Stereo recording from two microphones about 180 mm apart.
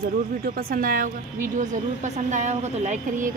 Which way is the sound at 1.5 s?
40° right (ahead or behind).